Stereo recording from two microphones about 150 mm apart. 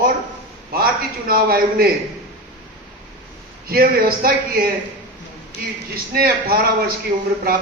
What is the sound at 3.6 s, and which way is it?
A man's voice, 80° right.